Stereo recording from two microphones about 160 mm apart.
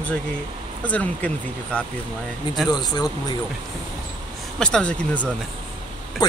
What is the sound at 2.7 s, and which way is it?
Speech, 25° left (ahead or behind).